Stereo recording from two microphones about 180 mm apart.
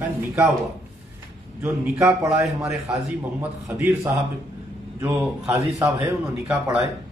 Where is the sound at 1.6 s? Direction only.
15° right (ahead or behind).